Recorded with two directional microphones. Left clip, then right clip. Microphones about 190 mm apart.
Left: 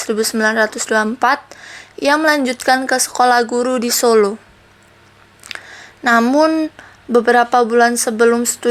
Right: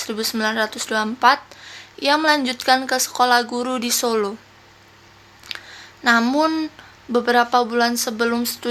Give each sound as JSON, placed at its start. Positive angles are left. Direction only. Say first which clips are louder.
{"t": 0.0, "sound": "a woman's voice", "louder": "left 7 dB", "side_deg": 25}
{"t": 5.5, "sound": "a sound", "louder": "left 3 dB", "side_deg": 25}
{"t": 6.1, "sound": "a woman's voice", "louder": "left 6 dB", "side_deg": 20}